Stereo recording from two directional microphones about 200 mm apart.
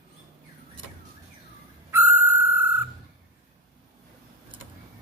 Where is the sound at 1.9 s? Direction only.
10° right (ahead or behind).